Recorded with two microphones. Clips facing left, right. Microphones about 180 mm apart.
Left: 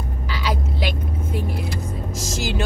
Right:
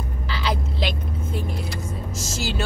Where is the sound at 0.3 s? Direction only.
10° left (ahead or behind).